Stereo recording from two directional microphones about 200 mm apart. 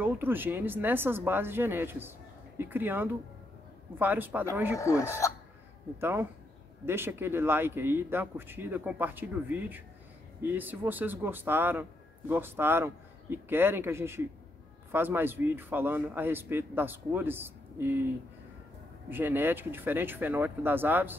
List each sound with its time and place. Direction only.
0.0 s a man's voice: 10° right (ahead or behind)
4.7 s speech: 15° left (ahead or behind)
5.9 s a man's voice: 10° right (ahead or behind)